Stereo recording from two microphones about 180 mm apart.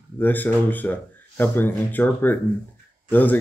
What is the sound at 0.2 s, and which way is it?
Speech, 10° left (ahead or behind).